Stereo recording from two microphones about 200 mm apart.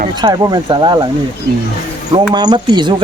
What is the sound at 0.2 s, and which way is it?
Speech, 20° right (ahead or behind).